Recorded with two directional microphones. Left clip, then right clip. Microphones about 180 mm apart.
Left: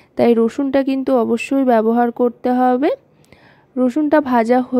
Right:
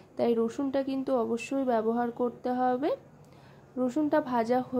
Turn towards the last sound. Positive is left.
turn(degrees=45)  # may be behind; listen again after turning